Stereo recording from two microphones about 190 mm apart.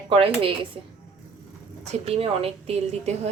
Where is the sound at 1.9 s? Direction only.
30° right (ahead or behind).